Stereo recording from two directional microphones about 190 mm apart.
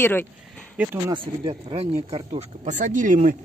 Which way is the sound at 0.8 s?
10° right (ahead or behind).